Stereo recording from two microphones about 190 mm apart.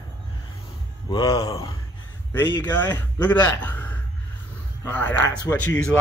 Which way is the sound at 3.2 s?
10° left (ahead or behind).